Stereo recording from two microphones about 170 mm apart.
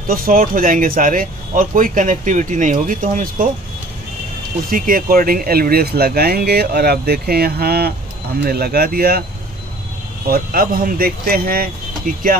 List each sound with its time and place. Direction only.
0.1 s speech: 55° right (ahead or behind)
4.6 s speech: 55° right (ahead or behind)
10.2 s speech: 60° right (ahead or behind)